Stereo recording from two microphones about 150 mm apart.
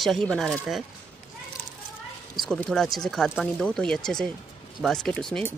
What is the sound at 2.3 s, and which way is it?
Speech, centre (ahead or behind).